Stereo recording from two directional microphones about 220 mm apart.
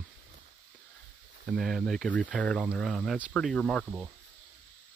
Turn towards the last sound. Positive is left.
turn(degrees=-5)  # may be behind; listen again after turning